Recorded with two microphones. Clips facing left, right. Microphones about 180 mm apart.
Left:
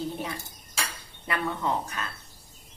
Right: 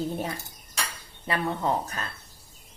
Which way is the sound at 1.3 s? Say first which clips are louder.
Right 2 dB; 30° right (ahead or behind).